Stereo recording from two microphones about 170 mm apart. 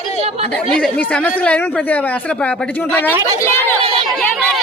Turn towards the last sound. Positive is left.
turn(degrees=15)  # may be behind; listen again after turning